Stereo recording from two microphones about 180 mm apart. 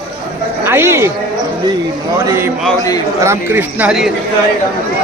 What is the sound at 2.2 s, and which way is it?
Speech, 15° right (ahead or behind).